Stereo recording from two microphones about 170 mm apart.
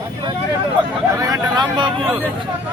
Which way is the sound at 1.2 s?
20° right (ahead or behind).